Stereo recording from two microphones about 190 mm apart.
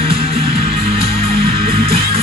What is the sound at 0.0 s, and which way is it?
Music, 30° right (ahead or behind).